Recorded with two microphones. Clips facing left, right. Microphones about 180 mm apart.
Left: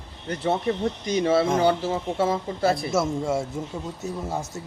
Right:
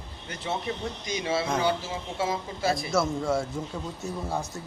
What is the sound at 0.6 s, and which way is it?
Speech, 50° left (ahead or behind).